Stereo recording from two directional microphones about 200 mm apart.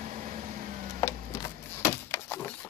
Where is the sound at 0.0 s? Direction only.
40° right (ahead or behind).